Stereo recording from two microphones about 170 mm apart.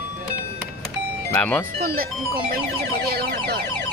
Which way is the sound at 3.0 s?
65° right (ahead or behind).